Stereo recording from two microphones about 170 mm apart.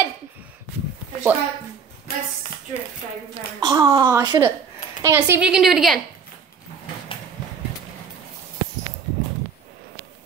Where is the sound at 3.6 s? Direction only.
25° right (ahead or behind); by 6.0 s centre (ahead or behind).